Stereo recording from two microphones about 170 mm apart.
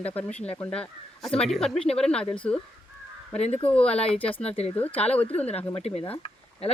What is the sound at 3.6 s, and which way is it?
Speech, 5° left (ahead or behind).